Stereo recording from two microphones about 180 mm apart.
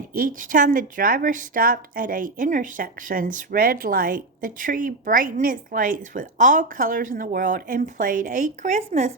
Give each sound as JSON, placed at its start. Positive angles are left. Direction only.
{"t": 0.1, "sound": "a woman's voice", "side_deg": -50}